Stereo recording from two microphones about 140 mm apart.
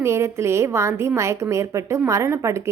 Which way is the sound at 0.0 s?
20° right (ahead or behind).